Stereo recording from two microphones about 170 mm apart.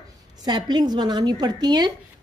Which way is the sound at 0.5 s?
25° right (ahead or behind).